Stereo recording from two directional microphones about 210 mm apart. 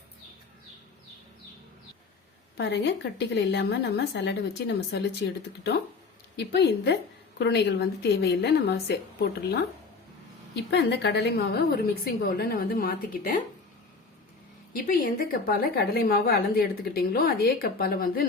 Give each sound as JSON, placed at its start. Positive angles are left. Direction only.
{"t": 2.6, "sound": "a woman's voice", "side_deg": 55}
{"t": 6.3, "sound": "a woman's voice", "side_deg": 55}
{"t": 14.7, "sound": "a woman's voice", "side_deg": 40}